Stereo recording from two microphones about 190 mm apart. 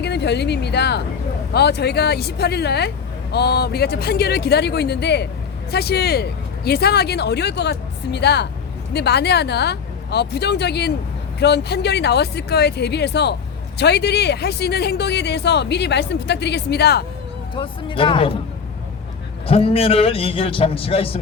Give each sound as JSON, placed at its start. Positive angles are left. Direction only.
{"t": 0.0, "sound": "speech", "side_deg": 65}
{"t": 17.5, "sound": "a man's voice", "side_deg": 25}
{"t": 19.5, "sound": "a man's voice", "side_deg": 30}